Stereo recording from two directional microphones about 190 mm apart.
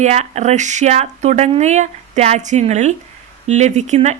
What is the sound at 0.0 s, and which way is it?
Speech, 35° right (ahead or behind).